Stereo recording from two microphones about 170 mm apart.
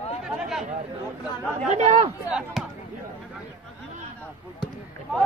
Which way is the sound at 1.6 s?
45° right (ahead or behind).